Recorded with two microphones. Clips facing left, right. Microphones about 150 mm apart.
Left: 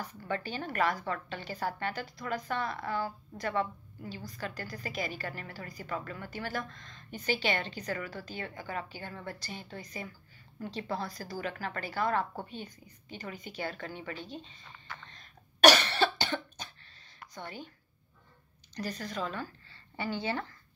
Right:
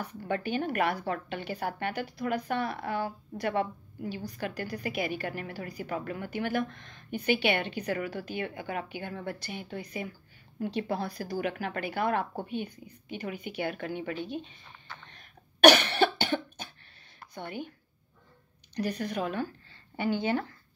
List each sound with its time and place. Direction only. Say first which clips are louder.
0.3 s a woman's voice: right 6 dB; 55° right (ahead or behind)
15.1 s cough: right 3 dB; 55° right (ahead or behind)
17.3 s a woman's voice: right 5 dB; 55° right (ahead or behind)
18.8 s speech: right 5 dB; 60° right (ahead or behind)